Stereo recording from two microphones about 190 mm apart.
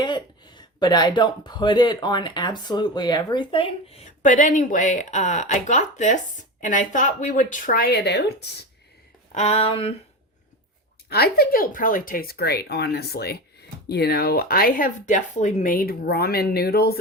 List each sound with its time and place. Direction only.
0.0 s speech: 25° left (ahead or behind)
4.2 s speech: 40° left (ahead or behind); by 8.6 s 60° left (ahead or behind)
9.3 s a sound: 35° left (ahead or behind)
11.1 s speech: 55° left (ahead or behind)